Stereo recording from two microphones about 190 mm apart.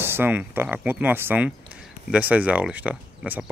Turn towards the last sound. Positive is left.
turn(degrees=-5)  # may be behind; listen again after turning